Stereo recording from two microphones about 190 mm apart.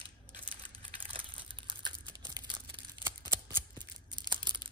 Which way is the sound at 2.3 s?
20° right (ahead or behind).